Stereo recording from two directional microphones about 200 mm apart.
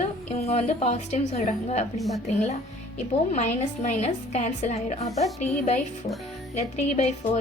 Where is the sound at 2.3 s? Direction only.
35° left (ahead or behind).